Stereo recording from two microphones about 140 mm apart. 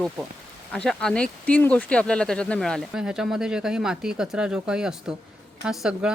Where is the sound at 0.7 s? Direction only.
5° left (ahead or behind).